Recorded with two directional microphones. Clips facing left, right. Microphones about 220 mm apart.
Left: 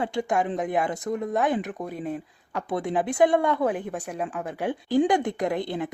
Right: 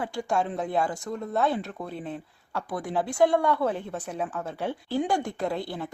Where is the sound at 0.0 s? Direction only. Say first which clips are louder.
Left 3 dB; 20° left (ahead or behind).